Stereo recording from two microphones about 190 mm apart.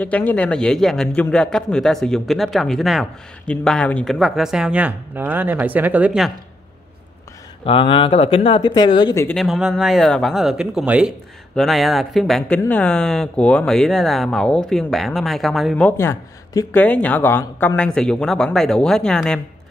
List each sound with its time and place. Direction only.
0.0 s speech: 10° left (ahead or behind)
7.6 s speech: 25° left (ahead or behind)
9.3 s speech: centre (ahead or behind)